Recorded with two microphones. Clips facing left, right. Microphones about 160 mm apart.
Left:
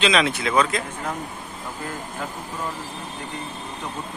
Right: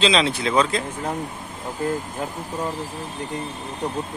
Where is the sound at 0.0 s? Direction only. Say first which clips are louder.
Right 1 dB; 30° right (ahead or behind).